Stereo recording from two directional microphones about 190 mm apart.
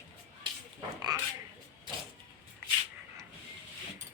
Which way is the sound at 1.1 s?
20° right (ahead or behind).